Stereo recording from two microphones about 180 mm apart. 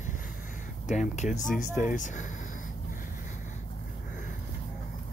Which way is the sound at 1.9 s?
45° left (ahead or behind).